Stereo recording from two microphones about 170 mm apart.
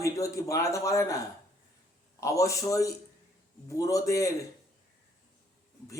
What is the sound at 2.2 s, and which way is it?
Speech, 20° left (ahead or behind).